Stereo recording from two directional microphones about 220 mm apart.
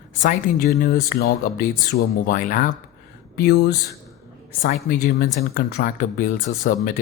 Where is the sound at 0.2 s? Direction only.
40° left (ahead or behind).